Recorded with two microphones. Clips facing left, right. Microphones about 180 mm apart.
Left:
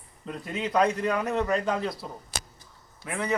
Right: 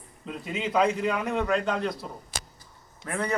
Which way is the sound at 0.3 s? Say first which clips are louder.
Even; centre (ahead or behind).